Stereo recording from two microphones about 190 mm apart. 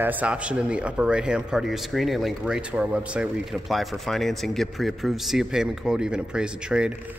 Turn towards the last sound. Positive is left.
turn(degrees=-5)  # may be behind; listen again after turning